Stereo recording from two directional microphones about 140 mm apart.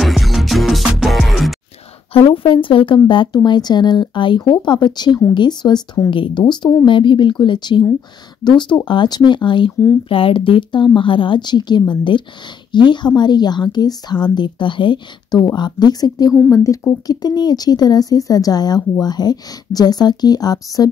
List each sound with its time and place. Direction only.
0.0 s music: centre (ahead or behind)
2.1 s a woman's voice: 40° left (ahead or behind)
10.0 s a woman's voice: 40° left (ahead or behind)